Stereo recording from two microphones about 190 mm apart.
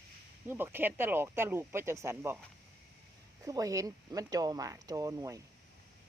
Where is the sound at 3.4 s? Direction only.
20° right (ahead or behind).